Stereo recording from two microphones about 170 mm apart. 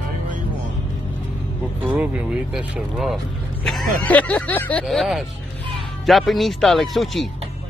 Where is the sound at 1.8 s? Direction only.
10° right (ahead or behind).